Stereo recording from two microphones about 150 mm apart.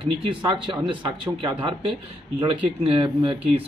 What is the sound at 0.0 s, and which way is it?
Speech, 35° right (ahead or behind).